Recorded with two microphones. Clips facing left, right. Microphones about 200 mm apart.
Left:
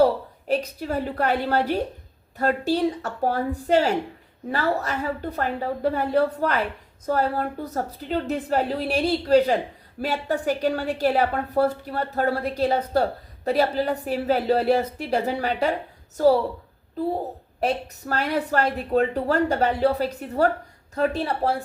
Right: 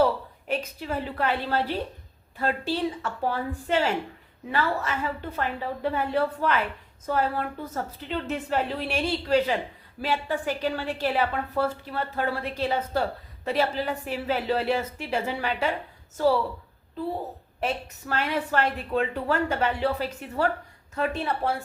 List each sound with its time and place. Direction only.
0.0 s a woman's voice: 35° left (ahead or behind)
17.6 s a woman's voice: 40° left (ahead or behind)